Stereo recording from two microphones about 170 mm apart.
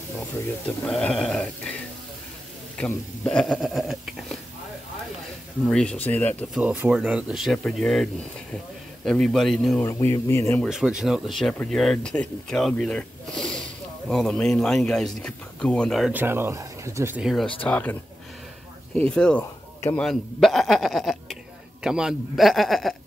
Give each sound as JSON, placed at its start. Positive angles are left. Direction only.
{"t": 0.8, "sound": "speech", "side_deg": 5}
{"t": 2.8, "sound": "speech", "side_deg": 5}
{"t": 5.7, "sound": "speech", "side_deg": 5}
{"t": 6.5, "sound": "speech", "side_deg": -10}
{"t": 9.8, "sound": "speech", "side_deg": 15}
{"t": 10.7, "sound": "speech", "side_deg": -5}
{"t": 16.1, "sound": "speech", "side_deg": -10}
{"t": 17.6, "sound": "speech", "side_deg": 10}
{"t": 18.9, "sound": "speech", "side_deg": 5}